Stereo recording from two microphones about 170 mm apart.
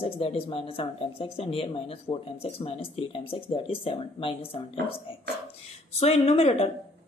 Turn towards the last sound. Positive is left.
turn(degrees=40)  # may be behind; listen again after turning